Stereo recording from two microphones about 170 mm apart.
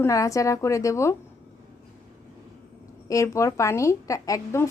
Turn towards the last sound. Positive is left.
turn(degrees=15)  # may be behind; listen again after turning